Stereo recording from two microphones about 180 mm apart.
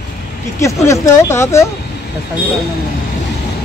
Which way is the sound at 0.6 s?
15° left (ahead or behind).